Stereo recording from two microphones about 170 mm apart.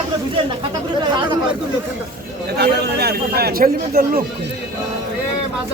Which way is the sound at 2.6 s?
75° right (ahead or behind).